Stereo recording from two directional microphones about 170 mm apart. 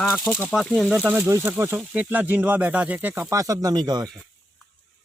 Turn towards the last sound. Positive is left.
turn(degrees=-25)  # may be behind; listen again after turning